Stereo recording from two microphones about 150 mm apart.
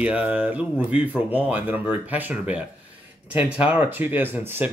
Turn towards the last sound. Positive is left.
turn(degrees=-15)  # may be behind; listen again after turning